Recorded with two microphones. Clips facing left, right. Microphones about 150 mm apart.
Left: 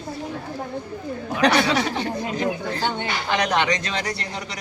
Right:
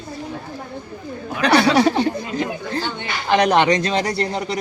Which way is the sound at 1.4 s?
35° right (ahead or behind).